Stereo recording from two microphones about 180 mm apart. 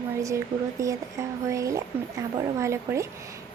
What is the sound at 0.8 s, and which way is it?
A woman's voice, 15° right (ahead or behind).